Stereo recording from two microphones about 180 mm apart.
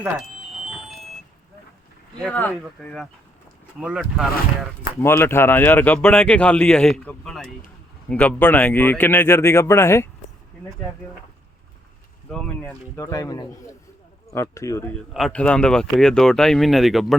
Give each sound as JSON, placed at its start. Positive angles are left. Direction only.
{"t": 0.0, "sound": "music", "side_deg": 0}
{"t": 2.2, "sound": "speech", "side_deg": 5}
{"t": 4.9, "sound": "speech", "side_deg": 15}
{"t": 12.3, "sound": "speech", "side_deg": 5}
{"t": 15.1, "sound": "speech", "side_deg": 5}